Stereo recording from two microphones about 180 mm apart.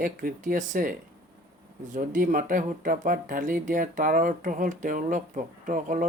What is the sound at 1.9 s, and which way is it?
Speech, 45° right (ahead or behind).